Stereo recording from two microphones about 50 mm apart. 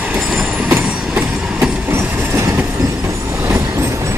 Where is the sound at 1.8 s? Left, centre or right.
Right.